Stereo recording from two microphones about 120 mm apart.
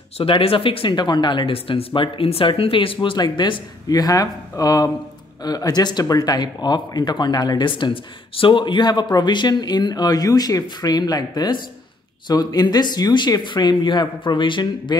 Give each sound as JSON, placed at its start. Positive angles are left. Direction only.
{"t": 0.2, "sound": "speech", "side_deg": 50}